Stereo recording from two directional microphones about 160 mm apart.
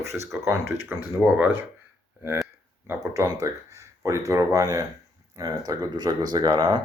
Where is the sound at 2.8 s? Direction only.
15° right (ahead or behind).